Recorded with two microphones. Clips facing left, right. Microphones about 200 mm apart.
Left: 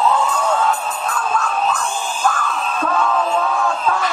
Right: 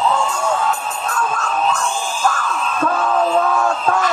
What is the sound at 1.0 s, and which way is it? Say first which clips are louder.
Music: even; 45° right (ahead or behind).